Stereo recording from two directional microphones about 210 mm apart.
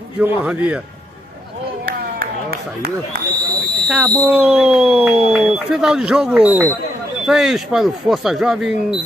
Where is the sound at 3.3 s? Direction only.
20° right (ahead or behind).